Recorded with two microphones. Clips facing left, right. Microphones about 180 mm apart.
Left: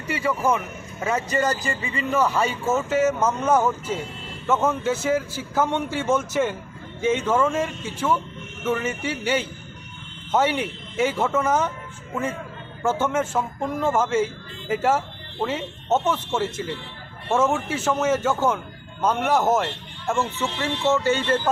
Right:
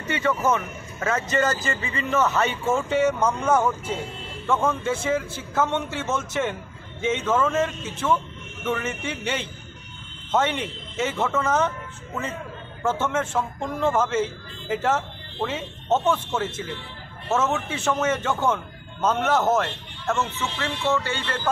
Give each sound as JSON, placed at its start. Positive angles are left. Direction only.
{"t": 0.2, "sound": "a man's voice", "side_deg": 10}
{"t": 21.0, "sound": "speech", "side_deg": 40}